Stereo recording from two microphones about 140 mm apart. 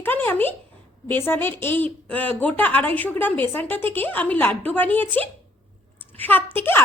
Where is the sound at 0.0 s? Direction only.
15° left (ahead or behind).